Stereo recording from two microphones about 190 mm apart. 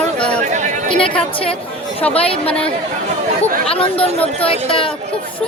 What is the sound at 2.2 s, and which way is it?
Speech, 30° left (ahead or behind).